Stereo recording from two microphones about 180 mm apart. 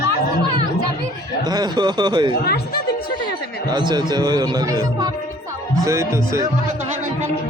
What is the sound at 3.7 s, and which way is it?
Speech, 25° right (ahead or behind).